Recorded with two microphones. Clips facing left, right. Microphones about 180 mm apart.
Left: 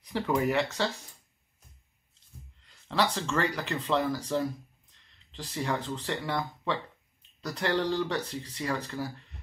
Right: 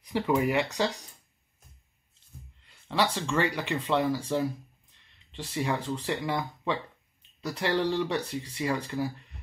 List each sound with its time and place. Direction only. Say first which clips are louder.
0.0 s speech: right 2 dB; 5° right (ahead or behind)
2.6 s speech: right 1 dB; 10° right (ahead or behind)